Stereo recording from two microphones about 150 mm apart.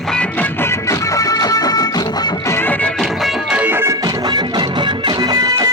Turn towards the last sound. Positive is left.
turn(degrees=-25)  # may be behind; listen again after turning